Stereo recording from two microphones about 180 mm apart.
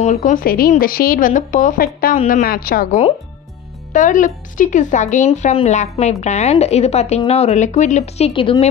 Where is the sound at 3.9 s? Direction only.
45° left (ahead or behind).